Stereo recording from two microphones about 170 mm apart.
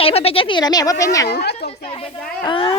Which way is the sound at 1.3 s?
80° left.